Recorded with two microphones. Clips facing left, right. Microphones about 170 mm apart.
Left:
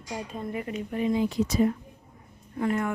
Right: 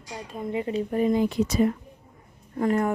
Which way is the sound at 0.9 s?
45° right (ahead or behind).